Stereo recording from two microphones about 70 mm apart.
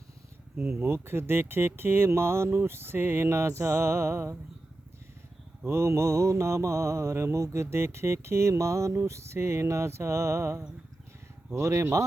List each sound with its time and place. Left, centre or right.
0.7 s speech: right
5.6 s mantra: right